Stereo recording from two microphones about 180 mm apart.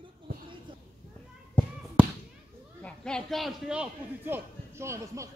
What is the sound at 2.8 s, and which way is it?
A man's voice, 5° left (ahead or behind).